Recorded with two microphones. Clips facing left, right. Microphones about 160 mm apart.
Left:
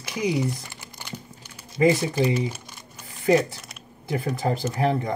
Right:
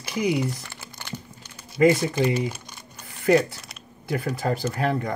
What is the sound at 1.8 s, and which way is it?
Speech, 25° left (ahead or behind).